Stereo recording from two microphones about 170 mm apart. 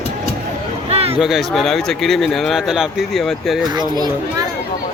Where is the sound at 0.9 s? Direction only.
35° right (ahead or behind).